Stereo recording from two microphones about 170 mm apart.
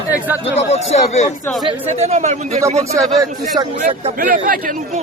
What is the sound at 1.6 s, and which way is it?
Speech, 40° right (ahead or behind).